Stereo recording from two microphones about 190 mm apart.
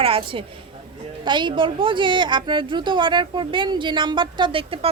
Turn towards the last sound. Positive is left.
turn(degrees=-30)  # may be behind; listen again after turning